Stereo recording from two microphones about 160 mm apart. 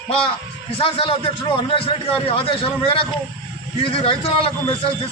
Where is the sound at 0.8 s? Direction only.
35° left (ahead or behind).